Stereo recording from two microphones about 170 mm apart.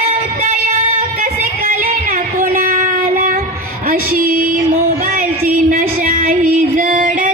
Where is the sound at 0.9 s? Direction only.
55° right (ahead or behind).